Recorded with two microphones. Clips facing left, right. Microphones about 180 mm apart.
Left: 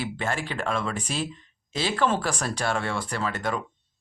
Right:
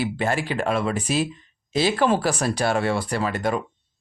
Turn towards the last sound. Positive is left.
turn(degrees=-15)  # may be behind; listen again after turning